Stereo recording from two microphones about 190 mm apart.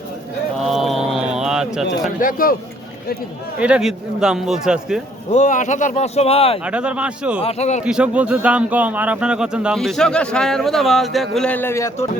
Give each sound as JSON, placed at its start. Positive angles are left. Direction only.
{"t": 0.6, "sound": "a sound", "side_deg": 0}
{"t": 2.2, "sound": "a man's voice", "side_deg": 50}
{"t": 3.6, "sound": "a man's voice", "side_deg": -5}
{"t": 5.3, "sound": "speech", "side_deg": 40}
{"t": 6.7, "sound": "a man's voice", "side_deg": -5}
{"t": 7.4, "sound": "speech", "side_deg": 35}
{"t": 7.9, "sound": "a man's voice", "side_deg": -5}